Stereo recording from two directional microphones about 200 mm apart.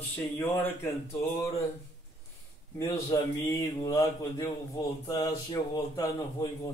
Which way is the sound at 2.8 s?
15° left (ahead or behind).